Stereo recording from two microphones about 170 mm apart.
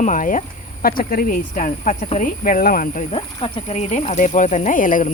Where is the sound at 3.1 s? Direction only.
35° left (ahead or behind).